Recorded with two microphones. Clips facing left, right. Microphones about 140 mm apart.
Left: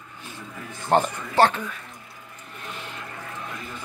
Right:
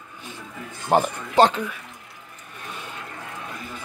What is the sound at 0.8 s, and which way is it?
Speech, 10° right (ahead or behind).